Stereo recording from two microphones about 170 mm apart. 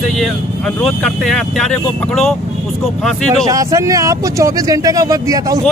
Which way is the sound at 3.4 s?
20° right (ahead or behind).